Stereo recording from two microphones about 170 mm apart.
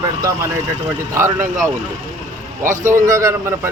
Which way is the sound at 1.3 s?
45° right (ahead or behind).